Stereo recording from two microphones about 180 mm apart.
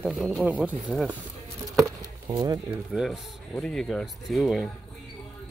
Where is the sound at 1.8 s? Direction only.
20° right (ahead or behind).